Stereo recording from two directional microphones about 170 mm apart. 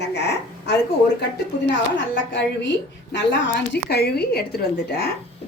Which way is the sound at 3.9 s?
70° left (ahead or behind).